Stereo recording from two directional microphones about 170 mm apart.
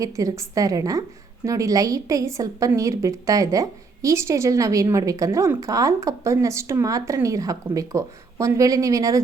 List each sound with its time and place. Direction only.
0.0 s a woman's voice: 20° right (ahead or behind)